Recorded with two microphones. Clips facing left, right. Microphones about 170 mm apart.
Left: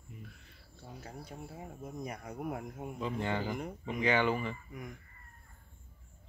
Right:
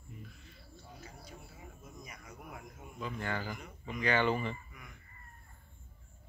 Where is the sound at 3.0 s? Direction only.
25° left (ahead or behind); by 4.6 s 10° left (ahead or behind).